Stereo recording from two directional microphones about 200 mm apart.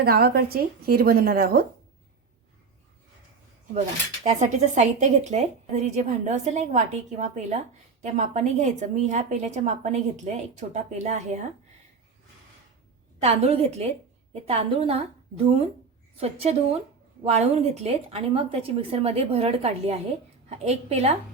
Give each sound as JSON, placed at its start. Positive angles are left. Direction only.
{"t": 0.0, "sound": "speech", "side_deg": -50}
{"t": 3.8, "sound": "speech", "side_deg": -35}
{"t": 13.2, "sound": "a woman's voice", "side_deg": -30}
{"t": 16.1, "sound": "a woman's voice", "side_deg": -30}